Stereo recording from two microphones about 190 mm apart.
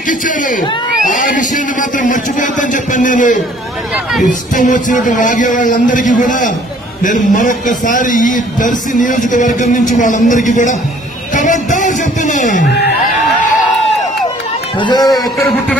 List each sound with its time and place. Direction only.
0.1 s a man's voice: 45° left (ahead or behind)
12.6 s speech: 60° left (ahead or behind)
14.8 s a man's voice: 25° left (ahead or behind)